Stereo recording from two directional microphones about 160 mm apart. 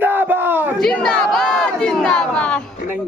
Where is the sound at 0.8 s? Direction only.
5° left (ahead or behind).